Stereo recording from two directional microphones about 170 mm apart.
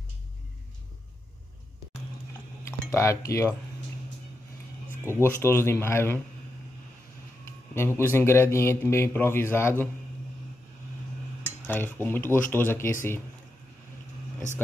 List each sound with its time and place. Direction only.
2.6 s speech: 15° left (ahead or behind)
5.0 s speech: 15° right (ahead or behind)
5.4 s a man's voice: 15° left (ahead or behind)
7.7 s a man's voice: 15° left (ahead or behind)
11.6 s a man's voice: 10° left (ahead or behind)